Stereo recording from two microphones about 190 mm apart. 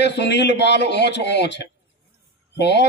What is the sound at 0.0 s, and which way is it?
A man's voice, 65° left (ahead or behind).